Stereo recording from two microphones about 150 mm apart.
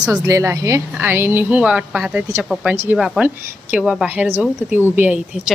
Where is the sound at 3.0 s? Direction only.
Centre (ahead or behind).